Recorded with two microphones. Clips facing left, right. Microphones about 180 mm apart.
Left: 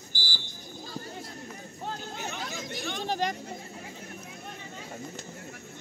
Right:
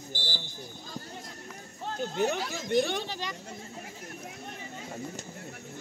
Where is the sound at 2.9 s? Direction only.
50° left (ahead or behind).